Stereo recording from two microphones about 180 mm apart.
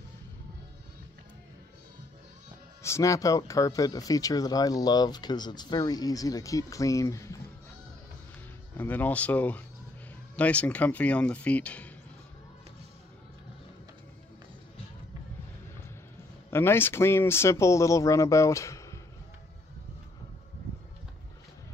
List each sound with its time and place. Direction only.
2.8 s speech: 15° left (ahead or behind)
8.7 s speech: 10° left (ahead or behind)
16.4 s speech: 15° left (ahead or behind)